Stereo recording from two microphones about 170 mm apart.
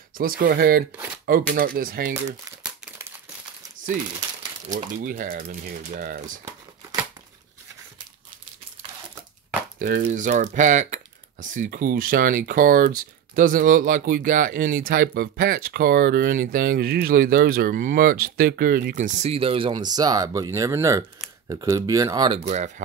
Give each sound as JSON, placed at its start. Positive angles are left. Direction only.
{"t": 0.2, "sound": "speech", "side_deg": -60}
{"t": 0.9, "sound": "shuffling cards", "side_deg": -10}
{"t": 1.8, "sound": "speech", "side_deg": -60}
{"t": 2.6, "sound": "crumpling", "side_deg": -5}
{"t": 4.7, "sound": "speech", "side_deg": -55}
{"t": 6.4, "sound": "crumpling", "side_deg": -20}
{"t": 9.8, "sound": "speech", "side_deg": -60}
{"t": 22.4, "sound": "speech", "side_deg": -40}